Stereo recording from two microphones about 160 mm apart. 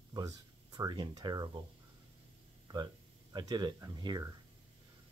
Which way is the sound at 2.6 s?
25° right (ahead or behind).